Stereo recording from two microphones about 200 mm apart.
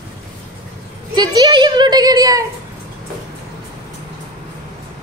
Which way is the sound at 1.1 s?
20° right (ahead or behind).